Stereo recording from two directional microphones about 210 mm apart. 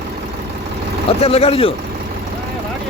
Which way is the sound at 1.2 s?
30° left (ahead or behind).